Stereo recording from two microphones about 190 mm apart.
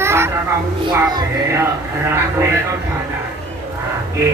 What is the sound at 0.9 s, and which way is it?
Music, 20° right (ahead or behind).